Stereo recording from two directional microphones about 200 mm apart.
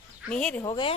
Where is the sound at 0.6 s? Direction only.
20° left (ahead or behind).